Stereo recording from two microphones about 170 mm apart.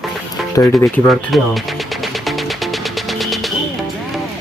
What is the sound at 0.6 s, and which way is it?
Speech, 15° left (ahead or behind).